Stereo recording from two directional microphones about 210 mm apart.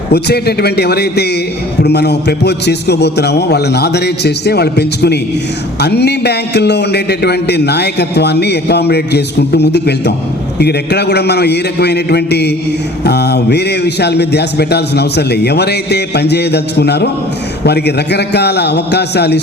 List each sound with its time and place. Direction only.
0.1 s a man's voice: 50° left (ahead or behind)